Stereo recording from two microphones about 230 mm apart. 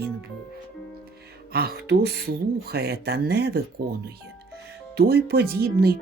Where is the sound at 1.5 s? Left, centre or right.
Right.